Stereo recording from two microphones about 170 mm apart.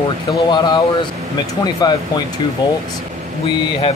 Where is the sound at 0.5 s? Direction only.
25° left (ahead or behind).